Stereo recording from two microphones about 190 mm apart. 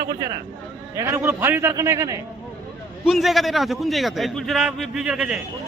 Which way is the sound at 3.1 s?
Centre (ahead or behind).